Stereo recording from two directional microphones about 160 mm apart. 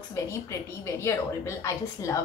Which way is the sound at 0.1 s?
20° left (ahead or behind).